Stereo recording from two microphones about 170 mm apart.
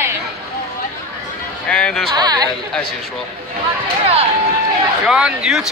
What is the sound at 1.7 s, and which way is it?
Speech, 5° left (ahead or behind).